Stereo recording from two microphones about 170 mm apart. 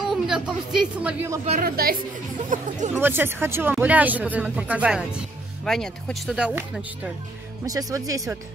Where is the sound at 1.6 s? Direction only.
60° right (ahead or behind).